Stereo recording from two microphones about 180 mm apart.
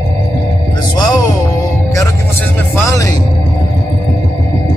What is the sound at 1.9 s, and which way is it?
Music, 15° left (ahead or behind).